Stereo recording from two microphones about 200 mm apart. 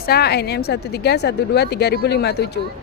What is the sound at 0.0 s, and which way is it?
Speech, 50° left (ahead or behind).